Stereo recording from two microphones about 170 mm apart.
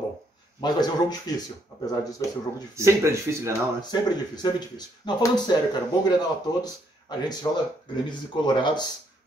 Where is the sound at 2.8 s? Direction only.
15° right (ahead or behind).